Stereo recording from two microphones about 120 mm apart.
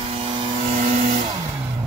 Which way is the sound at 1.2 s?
40° right (ahead or behind).